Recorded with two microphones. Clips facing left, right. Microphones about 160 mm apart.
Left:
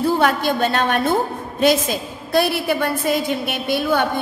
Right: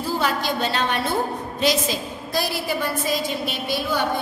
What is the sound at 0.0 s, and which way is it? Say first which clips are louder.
A woman's voice: left 6 dB; 60° left (ahead or behind).